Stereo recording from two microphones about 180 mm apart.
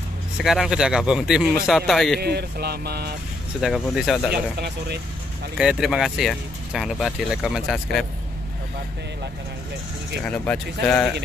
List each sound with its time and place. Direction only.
0.4 s speech: centre (ahead or behind)
2.1 s speech: 60° right (ahead or behind)
3.6 s speech: centre (ahead or behind)
4.3 s speech: 65° right (ahead or behind)
5.6 s speech: 5° right (ahead or behind)
10.2 s speech: 5° left (ahead or behind)